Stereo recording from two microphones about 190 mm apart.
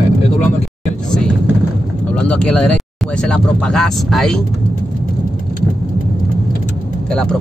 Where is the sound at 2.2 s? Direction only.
5° left (ahead or behind).